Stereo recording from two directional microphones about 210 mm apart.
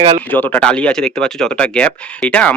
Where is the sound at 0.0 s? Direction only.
25° right (ahead or behind).